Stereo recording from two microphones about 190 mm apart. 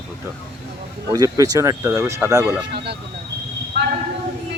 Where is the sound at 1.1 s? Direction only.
20° right (ahead or behind).